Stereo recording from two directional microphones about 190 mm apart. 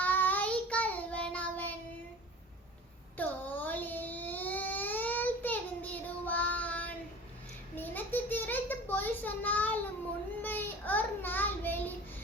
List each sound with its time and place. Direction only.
0.0 s child singing: 10° left (ahead or behind)
3.2 s a sound: 10° left (ahead or behind)
10.4 s child singing: 10° left (ahead or behind)